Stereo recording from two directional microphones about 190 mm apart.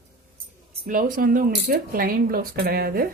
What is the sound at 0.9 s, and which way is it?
Speech, 45° right (ahead or behind).